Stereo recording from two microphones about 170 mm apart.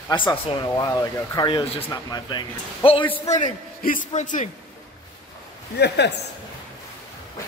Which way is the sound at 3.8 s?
50° left (ahead or behind).